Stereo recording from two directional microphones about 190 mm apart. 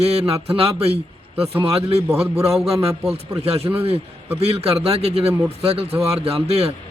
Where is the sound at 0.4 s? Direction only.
30° right (ahead or behind).